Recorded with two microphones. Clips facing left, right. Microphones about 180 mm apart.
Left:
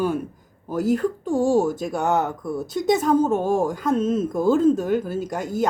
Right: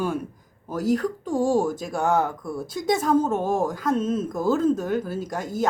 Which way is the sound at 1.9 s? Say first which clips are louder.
Left 1 dB; 25° left (ahead or behind).